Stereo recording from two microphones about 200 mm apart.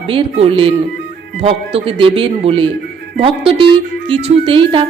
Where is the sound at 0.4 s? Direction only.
25° right (ahead or behind).